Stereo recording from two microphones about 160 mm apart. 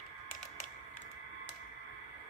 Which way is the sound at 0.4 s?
50° left (ahead or behind).